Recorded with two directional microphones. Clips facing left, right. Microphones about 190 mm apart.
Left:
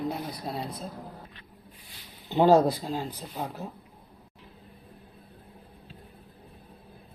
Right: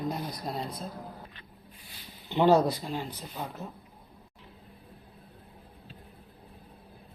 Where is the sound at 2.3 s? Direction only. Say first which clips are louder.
Left 2 dB; 40° left (ahead or behind).